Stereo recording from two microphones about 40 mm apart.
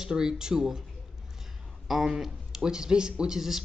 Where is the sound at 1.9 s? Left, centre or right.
Centre.